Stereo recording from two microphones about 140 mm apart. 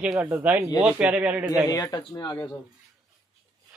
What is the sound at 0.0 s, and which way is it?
A man's voice, 10° right (ahead or behind).